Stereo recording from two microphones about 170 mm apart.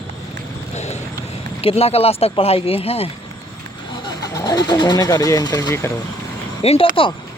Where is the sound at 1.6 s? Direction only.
35° left (ahead or behind).